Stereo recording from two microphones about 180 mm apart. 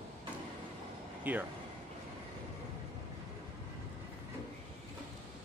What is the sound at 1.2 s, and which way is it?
Speech, 10° right (ahead or behind).